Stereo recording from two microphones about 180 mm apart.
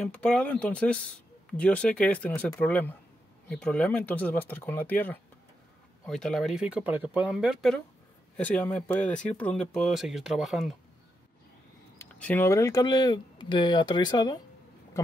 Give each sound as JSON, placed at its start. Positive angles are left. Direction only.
{"t": 0.0, "sound": "speech", "side_deg": 5}
{"t": 12.0, "sound": "speech", "side_deg": 10}